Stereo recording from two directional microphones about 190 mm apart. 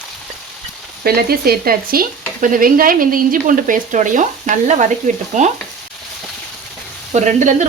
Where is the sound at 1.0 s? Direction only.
55° right (ahead or behind).